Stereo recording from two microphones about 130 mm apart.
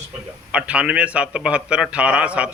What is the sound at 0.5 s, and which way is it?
A man's voice, 10° right (ahead or behind).